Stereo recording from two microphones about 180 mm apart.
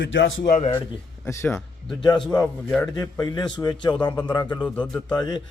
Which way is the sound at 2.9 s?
20° left (ahead or behind).